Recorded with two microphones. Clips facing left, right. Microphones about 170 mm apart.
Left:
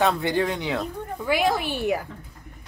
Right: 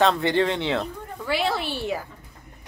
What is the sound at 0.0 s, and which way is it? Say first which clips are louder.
Speech: right 2 dB; 5° left (ahead or behind).